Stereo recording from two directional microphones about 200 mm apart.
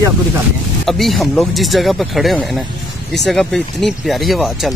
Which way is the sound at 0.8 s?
Centre (ahead or behind).